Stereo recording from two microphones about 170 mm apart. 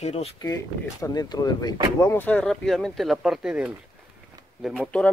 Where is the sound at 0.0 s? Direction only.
40° left (ahead or behind).